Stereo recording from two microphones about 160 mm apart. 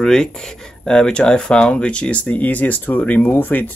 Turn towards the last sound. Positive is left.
turn(degrees=10)  # may be behind; listen again after turning